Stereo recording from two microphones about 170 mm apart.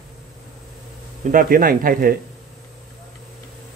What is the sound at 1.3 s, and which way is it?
Speech, 60° right (ahead or behind).